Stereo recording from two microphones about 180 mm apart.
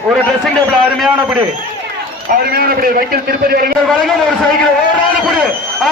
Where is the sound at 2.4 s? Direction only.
55° right (ahead or behind).